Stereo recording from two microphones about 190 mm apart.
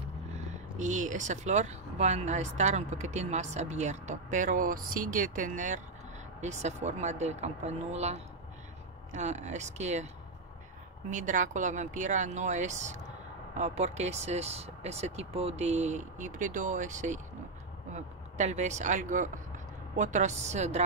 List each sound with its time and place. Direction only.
0.7 s speech: 40° right (ahead or behind)
11.1 s speech: 40° right (ahead or behind)